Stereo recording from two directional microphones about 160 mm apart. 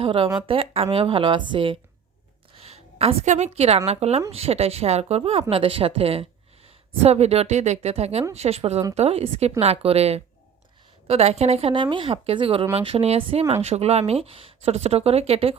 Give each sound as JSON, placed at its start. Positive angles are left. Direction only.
{"t": 0.0, "sound": "a woman's voice", "side_deg": -35}